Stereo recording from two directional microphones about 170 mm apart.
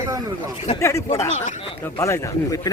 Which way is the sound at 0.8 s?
15° left (ahead or behind).